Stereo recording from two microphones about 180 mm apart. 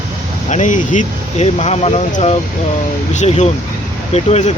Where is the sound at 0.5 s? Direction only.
45° left (ahead or behind).